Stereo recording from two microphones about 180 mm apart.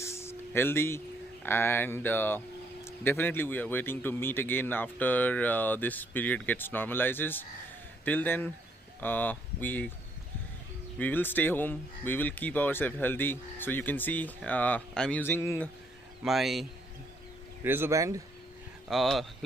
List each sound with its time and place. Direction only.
0.0 s speech: 15° left (ahead or behind)
11.0 s speech: 10° left (ahead or behind)
16.3 s a man's voice: centre (ahead or behind)
17.6 s a man's voice: 15° right (ahead or behind)
18.9 s a man's voice: centre (ahead or behind)